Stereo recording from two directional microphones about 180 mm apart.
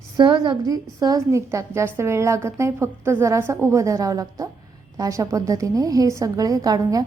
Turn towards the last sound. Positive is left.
turn(degrees=-20)  # may be behind; listen again after turning